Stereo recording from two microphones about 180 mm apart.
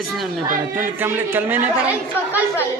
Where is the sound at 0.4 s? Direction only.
50° right (ahead or behind).